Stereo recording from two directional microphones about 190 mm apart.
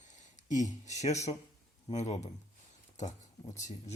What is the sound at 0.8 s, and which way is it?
Speech, 35° left (ahead or behind).